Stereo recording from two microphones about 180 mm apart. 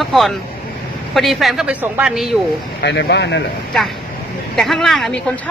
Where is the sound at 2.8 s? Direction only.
70° left (ahead or behind).